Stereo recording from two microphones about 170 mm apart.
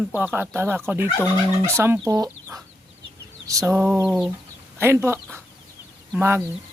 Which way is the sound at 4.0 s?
Centre (ahead or behind).